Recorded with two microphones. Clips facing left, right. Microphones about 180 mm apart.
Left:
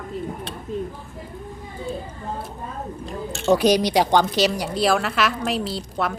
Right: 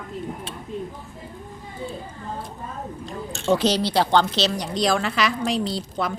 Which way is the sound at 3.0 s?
Centre (ahead or behind).